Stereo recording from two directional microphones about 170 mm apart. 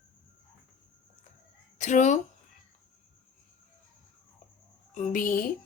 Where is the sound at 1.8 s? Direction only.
45° left (ahead or behind).